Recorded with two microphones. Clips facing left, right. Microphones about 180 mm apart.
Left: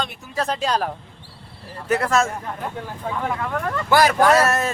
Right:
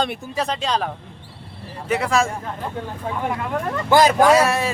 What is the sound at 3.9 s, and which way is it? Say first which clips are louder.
Speech: right 2 dB; 20° right (ahead or behind).